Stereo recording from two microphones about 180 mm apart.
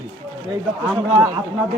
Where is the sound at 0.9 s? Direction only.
15° right (ahead or behind).